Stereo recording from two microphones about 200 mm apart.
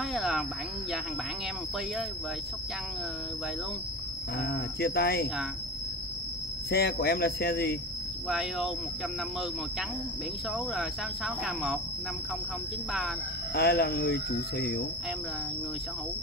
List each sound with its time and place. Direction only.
0.0 s cricket: centre (ahead or behind)
4.4 s speech: 50° left (ahead or behind)
6.7 s speech: 50° left (ahead or behind)
8.3 s speech: centre (ahead or behind)
10.5 s speech: centre (ahead or behind)
13.6 s speech: 50° left (ahead or behind)